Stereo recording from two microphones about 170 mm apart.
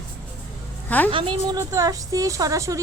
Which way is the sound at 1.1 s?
30° right (ahead or behind).